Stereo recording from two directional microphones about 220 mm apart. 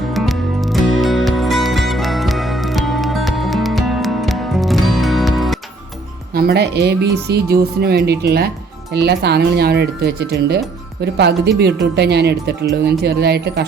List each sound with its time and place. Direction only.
0.1 s music: centre (ahead or behind)
6.3 s speech: 45° right (ahead or behind)